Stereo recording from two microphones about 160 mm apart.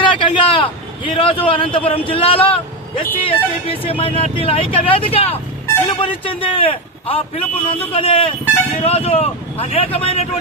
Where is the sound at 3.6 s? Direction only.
35° left (ahead or behind).